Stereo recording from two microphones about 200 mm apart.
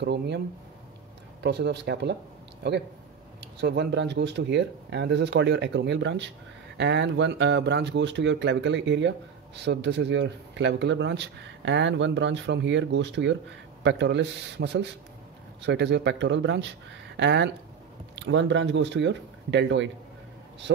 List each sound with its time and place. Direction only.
0.0 s speech: 55° right (ahead or behind)
1.4 s speech: 55° right (ahead or behind)
3.6 s speech: 60° right (ahead or behind)